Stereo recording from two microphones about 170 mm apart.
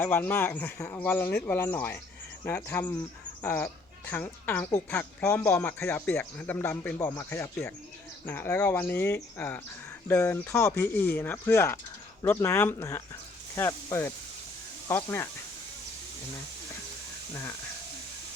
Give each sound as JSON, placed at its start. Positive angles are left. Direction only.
{"t": 0.0, "sound": "speech", "side_deg": 10}